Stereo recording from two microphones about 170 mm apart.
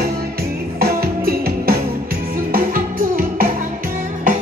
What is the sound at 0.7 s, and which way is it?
Music, 60° right (ahead or behind).